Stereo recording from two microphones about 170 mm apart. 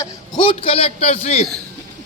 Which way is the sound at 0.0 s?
30° left (ahead or behind).